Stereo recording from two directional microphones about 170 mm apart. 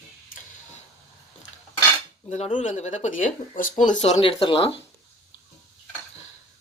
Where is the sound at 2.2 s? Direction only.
40° left (ahead or behind).